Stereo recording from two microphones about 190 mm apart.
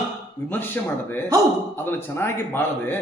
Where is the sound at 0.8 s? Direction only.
10° left (ahead or behind).